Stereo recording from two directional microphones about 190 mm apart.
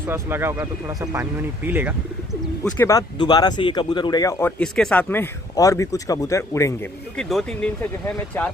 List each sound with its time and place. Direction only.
0.0 s speech: 10° right (ahead or behind)
2.6 s speech: 15° left (ahead or behind)
7.2 s speech: centre (ahead or behind)